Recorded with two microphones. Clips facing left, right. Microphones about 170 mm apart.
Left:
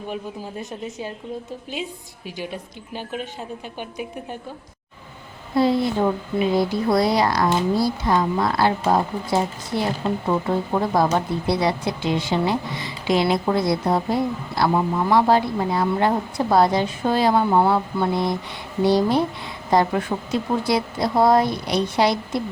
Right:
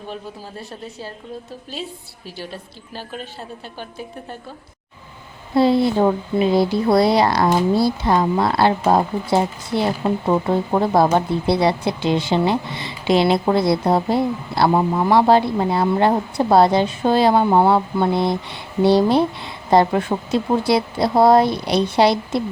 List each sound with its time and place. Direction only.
0.1 s a woman's voice: 15° left (ahead or behind)
2.4 s a woman's voice: 15° left (ahead or behind)
5.5 s a woman's voice: 30° right (ahead or behind)